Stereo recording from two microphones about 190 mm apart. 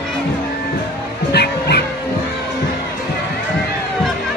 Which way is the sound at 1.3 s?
60° left (ahead or behind).